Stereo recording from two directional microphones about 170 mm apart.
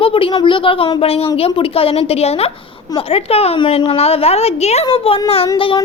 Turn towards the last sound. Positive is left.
turn(degrees=30)  # may be behind; listen again after turning